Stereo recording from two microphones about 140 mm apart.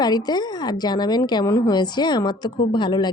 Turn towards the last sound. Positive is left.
turn(degrees=30)  # may be behind; listen again after turning